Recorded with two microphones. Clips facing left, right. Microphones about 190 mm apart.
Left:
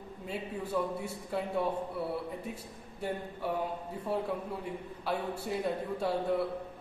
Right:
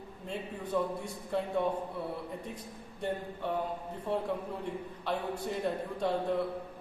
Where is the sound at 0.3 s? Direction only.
5° left (ahead or behind).